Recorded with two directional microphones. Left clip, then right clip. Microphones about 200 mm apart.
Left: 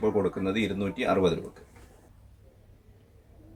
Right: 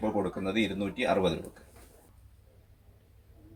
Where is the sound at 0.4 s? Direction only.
20° left (ahead or behind).